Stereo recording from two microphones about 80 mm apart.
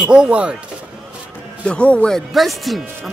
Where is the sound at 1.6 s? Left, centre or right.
Centre.